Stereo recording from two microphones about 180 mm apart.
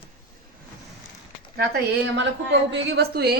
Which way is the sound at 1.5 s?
75° right (ahead or behind).